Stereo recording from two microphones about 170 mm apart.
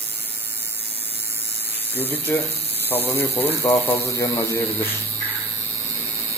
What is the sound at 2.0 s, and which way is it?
Speech, 10° left (ahead or behind).